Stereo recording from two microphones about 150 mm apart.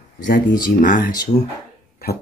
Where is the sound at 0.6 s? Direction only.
65° left (ahead or behind).